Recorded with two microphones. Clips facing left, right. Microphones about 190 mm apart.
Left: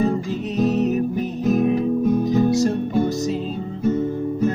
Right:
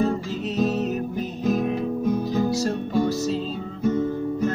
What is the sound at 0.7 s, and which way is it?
Music, 15° left (ahead or behind).